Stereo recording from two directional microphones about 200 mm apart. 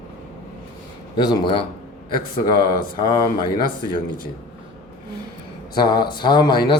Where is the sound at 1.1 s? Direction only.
20° left (ahead or behind).